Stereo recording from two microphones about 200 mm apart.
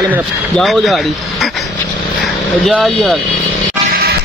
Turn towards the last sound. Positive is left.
turn(degrees=-50)  # may be behind; listen again after turning